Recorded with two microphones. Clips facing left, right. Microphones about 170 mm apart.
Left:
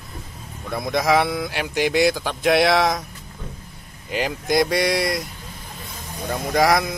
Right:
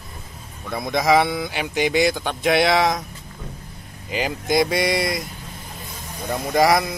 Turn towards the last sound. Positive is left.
turn(degrees=0)  # may be behind; listen again after turning